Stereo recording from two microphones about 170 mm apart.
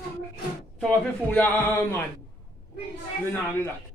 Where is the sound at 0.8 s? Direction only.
5° left (ahead or behind).